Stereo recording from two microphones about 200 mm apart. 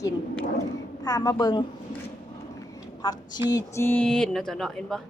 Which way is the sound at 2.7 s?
20° left (ahead or behind).